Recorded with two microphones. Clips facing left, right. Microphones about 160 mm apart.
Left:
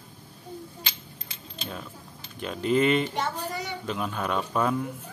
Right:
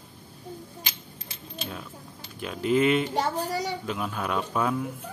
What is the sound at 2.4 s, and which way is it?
Speech, 5° right (ahead or behind).